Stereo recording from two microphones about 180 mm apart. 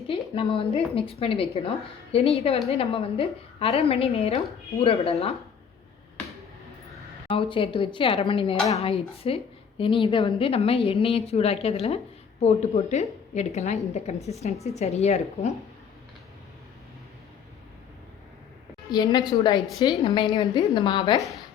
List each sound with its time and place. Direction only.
0.1 s a woman's voice: 30° left (ahead or behind)
7.3 s a woman's voice: 30° left (ahead or behind)
18.9 s a woman's voice: 25° left (ahead or behind)
21.2 s a woman's voice: centre (ahead or behind)